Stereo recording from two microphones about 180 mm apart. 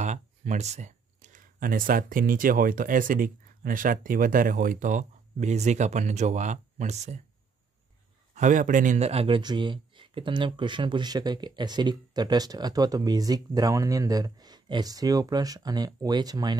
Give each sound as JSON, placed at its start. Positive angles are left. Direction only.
{"t": 0.0, "sound": "speech", "side_deg": -40}
{"t": 8.4, "sound": "speech", "side_deg": -45}